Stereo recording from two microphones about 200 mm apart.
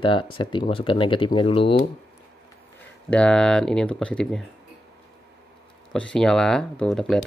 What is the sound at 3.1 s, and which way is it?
Speech, 5° left (ahead or behind).